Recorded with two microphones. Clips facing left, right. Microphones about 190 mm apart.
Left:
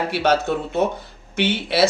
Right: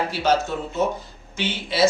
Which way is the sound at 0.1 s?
65° left (ahead or behind).